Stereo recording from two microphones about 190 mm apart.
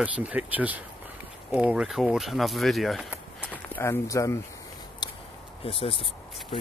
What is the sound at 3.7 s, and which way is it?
Speech, 15° left (ahead or behind).